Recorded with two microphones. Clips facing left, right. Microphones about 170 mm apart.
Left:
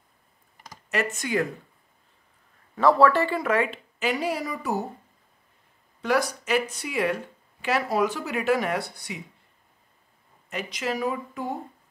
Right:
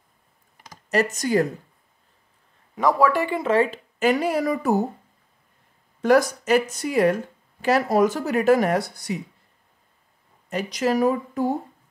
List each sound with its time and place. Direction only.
1.1 s speech: 40° right (ahead or behind)
2.7 s speech: 15° right (ahead or behind); by 3.8 s 30° right (ahead or behind)
4.0 s speech: 50° right (ahead or behind)
5.9 s speech: 45° right (ahead or behind)
10.5 s speech: 40° right (ahead or behind)